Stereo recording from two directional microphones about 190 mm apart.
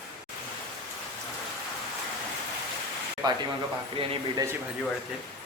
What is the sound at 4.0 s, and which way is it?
Speech, 30° right (ahead or behind).